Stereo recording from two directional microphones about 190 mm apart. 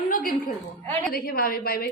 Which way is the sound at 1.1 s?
50° left (ahead or behind).